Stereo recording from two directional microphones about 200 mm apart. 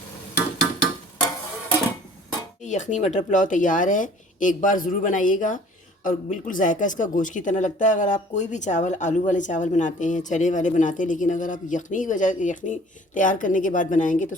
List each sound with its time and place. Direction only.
2.6 s speech: 35° left (ahead or behind)